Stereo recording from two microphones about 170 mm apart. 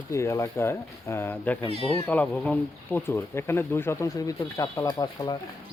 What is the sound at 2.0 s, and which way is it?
Speech, 10° left (ahead or behind).